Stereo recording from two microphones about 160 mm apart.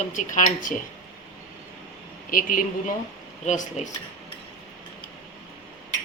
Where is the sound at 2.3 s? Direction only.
55° left (ahead or behind).